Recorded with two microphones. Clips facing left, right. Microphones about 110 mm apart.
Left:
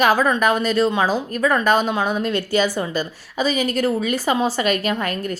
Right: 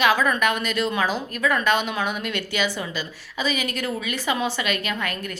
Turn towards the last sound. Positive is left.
turn(degrees=40)  # may be behind; listen again after turning